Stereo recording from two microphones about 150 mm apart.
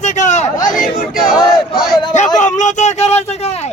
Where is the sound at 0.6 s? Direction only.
65° left (ahead or behind).